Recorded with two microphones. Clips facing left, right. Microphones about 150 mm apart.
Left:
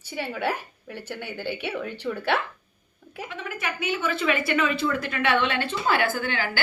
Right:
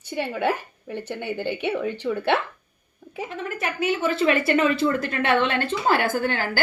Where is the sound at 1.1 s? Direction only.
25° right (ahead or behind).